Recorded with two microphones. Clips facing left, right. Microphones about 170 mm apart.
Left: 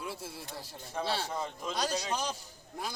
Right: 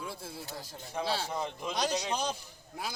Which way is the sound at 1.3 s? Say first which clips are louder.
Right 1 dB; 15° right (ahead or behind).